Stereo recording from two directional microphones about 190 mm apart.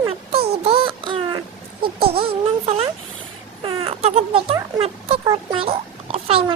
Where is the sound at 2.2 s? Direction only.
30° right (ahead or behind).